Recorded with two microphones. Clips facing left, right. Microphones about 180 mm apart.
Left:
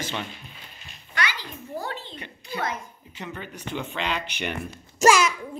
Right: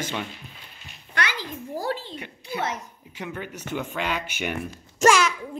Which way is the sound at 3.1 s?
10° right (ahead or behind).